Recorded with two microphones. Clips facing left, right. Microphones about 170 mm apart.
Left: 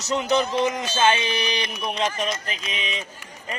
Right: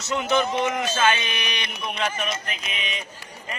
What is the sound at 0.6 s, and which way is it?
A man's voice, 20° left (ahead or behind).